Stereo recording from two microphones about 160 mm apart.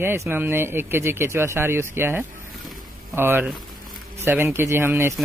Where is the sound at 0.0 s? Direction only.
15° right (ahead or behind).